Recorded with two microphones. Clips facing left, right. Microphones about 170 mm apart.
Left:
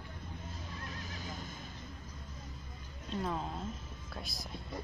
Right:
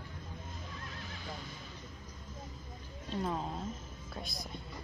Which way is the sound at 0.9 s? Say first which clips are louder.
Even; 45° left (ahead or behind).